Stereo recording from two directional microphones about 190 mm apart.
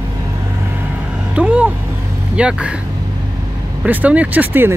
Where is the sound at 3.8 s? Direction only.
10° right (ahead or behind).